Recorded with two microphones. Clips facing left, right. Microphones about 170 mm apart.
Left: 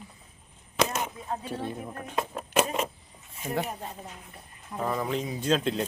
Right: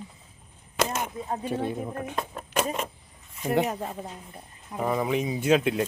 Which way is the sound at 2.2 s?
5° left (ahead or behind).